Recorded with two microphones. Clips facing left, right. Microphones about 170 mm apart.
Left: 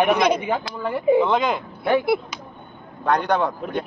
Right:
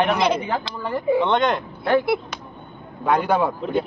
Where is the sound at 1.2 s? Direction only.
Centre (ahead or behind).